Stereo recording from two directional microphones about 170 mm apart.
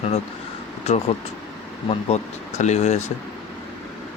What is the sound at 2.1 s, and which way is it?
Speech, 40° left (ahead or behind).